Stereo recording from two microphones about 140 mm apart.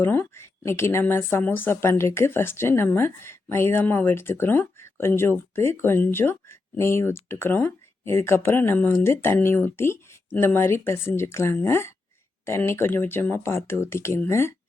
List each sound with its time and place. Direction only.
0.0 s speech: 15° left (ahead or behind)